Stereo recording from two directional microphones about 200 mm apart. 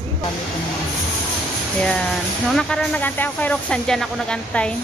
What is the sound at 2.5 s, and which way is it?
Speech, 5° left (ahead or behind).